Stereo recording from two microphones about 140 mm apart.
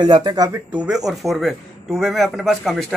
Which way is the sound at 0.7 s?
10° right (ahead or behind).